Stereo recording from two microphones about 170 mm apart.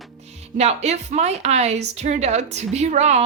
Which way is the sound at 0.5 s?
40° right (ahead or behind).